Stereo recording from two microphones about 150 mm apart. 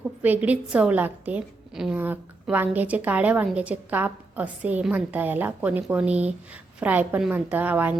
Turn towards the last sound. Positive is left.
turn(degrees=-10)  # may be behind; listen again after turning